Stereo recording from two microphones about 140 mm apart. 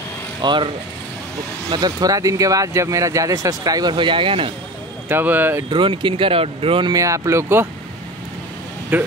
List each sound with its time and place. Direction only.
0.4 s speech: 35° right (ahead or behind)
1.7 s speech: 30° right (ahead or behind)
5.0 s speech: 15° right (ahead or behind)
5.7 s speech: 35° right (ahead or behind)
6.9 s speech: 20° right (ahead or behind)
8.9 s speech: 15° right (ahead or behind)